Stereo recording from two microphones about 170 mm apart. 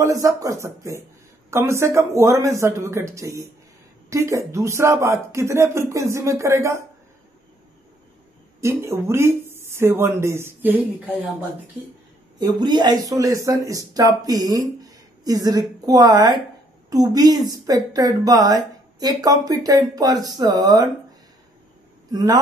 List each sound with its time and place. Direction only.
0.0 s speech: 20° right (ahead or behind)
8.6 s speech: 15° right (ahead or behind)
12.4 s speech: 25° right (ahead or behind)
22.1 s speech: 25° right (ahead or behind)